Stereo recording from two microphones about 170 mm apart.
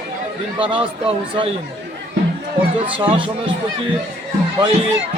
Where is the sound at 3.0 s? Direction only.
30° right (ahead or behind).